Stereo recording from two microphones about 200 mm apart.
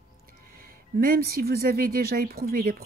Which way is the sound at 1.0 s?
50° right (ahead or behind).